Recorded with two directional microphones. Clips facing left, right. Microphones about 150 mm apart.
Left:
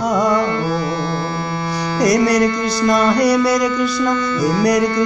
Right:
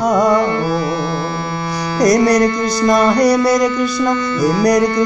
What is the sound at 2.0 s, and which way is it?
Music, 45° right (ahead or behind).